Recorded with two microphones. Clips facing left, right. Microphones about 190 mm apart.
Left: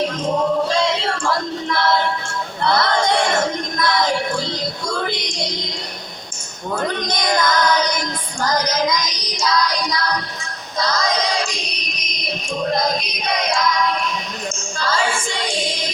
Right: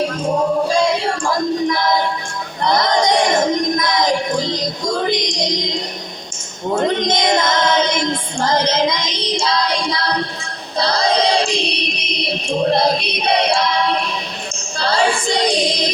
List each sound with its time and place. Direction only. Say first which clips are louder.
0.0 s music: right 2 dB; 10° right (ahead or behind)
2.6 s a sound: right 2 dB; 20° right (ahead or behind)
6.7 s child singing: right 6 dB; 25° right (ahead or behind)
10.8 s music: right 4 dB; 30° right (ahead or behind)